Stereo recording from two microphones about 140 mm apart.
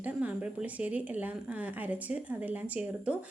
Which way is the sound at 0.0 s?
10° right (ahead or behind).